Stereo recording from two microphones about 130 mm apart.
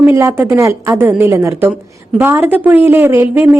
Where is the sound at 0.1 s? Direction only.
20° right (ahead or behind).